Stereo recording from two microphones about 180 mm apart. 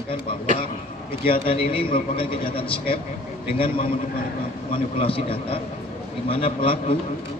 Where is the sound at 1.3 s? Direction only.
30° left (ahead or behind).